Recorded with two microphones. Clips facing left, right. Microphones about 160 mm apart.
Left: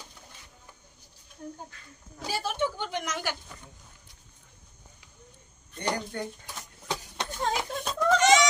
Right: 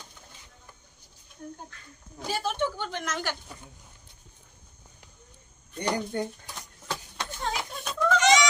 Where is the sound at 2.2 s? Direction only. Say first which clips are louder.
Right 1 dB; 10° left (ahead or behind).